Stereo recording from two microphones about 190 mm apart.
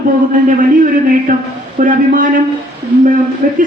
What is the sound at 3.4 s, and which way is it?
Speech, 40° right (ahead or behind).